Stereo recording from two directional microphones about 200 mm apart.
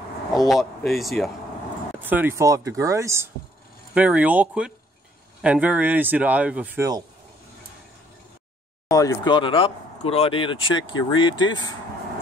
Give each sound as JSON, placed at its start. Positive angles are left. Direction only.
{"t": 0.5, "sound": "speech", "side_deg": 0}
{"t": 8.9, "sound": "speech", "side_deg": 15}